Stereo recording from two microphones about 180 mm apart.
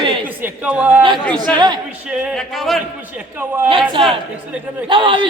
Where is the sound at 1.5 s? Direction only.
25° right (ahead or behind).